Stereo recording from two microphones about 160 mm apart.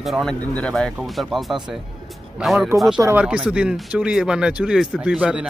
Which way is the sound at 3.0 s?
10° right (ahead or behind).